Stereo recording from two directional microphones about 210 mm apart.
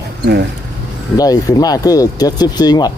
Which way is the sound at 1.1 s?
15° left (ahead or behind).